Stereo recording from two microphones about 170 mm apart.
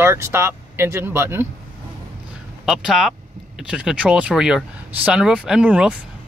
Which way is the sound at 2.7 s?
5° right (ahead or behind).